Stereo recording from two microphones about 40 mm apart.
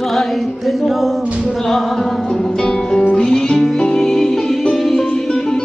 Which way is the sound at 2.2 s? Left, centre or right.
Centre.